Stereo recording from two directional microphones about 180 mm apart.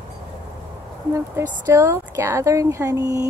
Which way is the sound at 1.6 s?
15° right (ahead or behind).